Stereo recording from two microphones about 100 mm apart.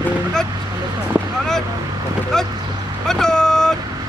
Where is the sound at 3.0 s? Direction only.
5° left (ahead or behind).